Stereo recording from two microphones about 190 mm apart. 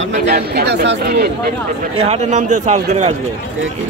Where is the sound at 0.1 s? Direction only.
55° right (ahead or behind).